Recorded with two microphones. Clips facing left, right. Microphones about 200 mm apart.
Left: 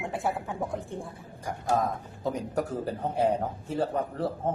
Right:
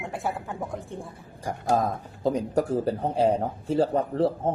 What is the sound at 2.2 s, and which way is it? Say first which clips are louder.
A man's voice: right 6 dB; 30° right (ahead or behind).